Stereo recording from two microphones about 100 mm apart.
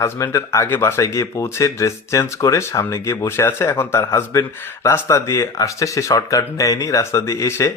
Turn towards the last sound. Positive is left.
turn(degrees=30)  # may be behind; listen again after turning